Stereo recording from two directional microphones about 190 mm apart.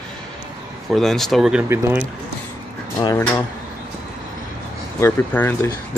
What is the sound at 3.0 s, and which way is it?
Speech, 20° left (ahead or behind).